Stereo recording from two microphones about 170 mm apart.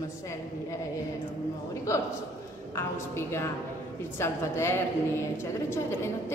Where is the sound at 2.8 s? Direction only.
15° left (ahead or behind).